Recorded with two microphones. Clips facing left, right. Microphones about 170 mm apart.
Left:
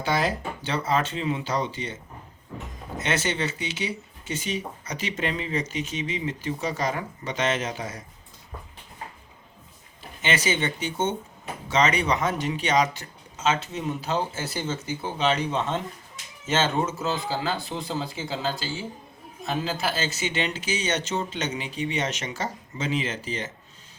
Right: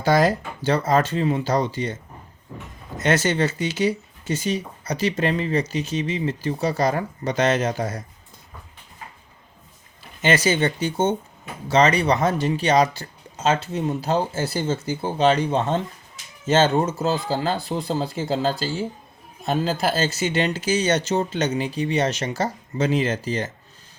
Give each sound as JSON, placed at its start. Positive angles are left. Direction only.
{"t": 0.0, "sound": "speech", "side_deg": -40}
{"t": 3.0, "sound": "speech", "side_deg": -40}
{"t": 10.2, "sound": "speech", "side_deg": -40}